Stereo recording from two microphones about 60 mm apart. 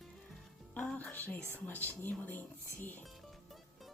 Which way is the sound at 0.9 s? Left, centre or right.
Left.